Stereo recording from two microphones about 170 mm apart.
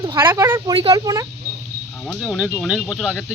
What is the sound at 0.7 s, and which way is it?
Speech, 30° right (ahead or behind).